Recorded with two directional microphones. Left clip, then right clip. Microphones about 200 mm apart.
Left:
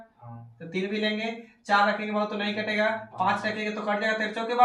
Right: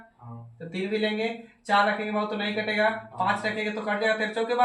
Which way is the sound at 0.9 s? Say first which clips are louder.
Right 4 dB; 15° right (ahead or behind).